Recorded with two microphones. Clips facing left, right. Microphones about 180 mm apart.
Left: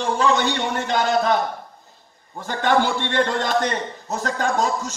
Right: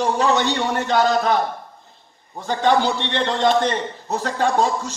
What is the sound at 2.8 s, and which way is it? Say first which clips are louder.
Speech: even; 50° left (ahead or behind).